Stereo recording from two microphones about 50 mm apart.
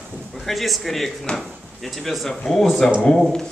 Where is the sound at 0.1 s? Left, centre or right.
Centre.